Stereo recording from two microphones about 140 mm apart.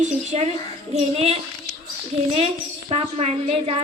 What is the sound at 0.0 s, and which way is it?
A woman's voice, 50° right (ahead or behind).